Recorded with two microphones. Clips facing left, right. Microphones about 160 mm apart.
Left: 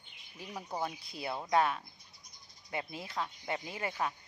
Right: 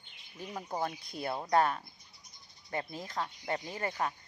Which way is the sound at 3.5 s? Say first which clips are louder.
Right 3 dB; 10° left (ahead or behind).